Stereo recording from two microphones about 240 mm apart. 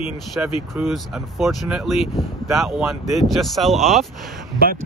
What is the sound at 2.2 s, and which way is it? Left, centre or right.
Speech, centre.